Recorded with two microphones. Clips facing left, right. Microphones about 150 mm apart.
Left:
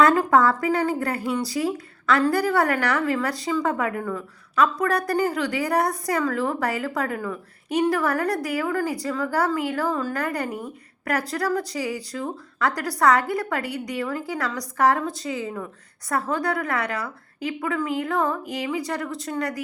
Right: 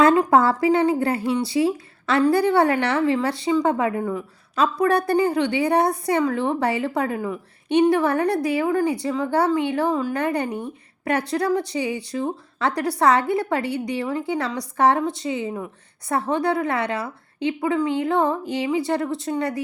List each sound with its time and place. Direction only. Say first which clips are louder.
0.0 s a woman's voice: right 2 dB; 25° right (ahead or behind)